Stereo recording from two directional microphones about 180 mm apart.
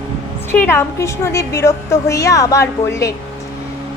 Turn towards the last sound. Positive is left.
turn(degrees=15)  # may be behind; listen again after turning